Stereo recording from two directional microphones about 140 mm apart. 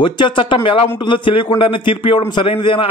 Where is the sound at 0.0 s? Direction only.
35° left (ahead or behind).